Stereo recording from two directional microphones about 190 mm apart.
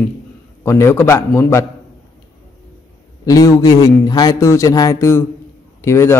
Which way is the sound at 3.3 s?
15° left (ahead or behind).